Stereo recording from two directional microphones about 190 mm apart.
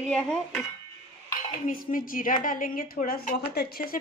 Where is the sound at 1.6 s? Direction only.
45° left (ahead or behind).